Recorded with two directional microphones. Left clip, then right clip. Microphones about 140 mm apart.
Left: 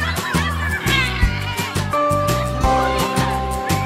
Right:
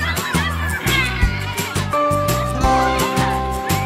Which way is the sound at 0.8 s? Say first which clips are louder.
Even; 35° right (ahead or behind).